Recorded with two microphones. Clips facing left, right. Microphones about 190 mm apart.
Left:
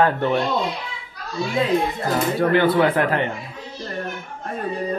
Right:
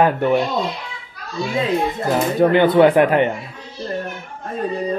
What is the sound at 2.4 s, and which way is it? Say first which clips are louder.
Speech: right 5 dB; 20° right (ahead or behind).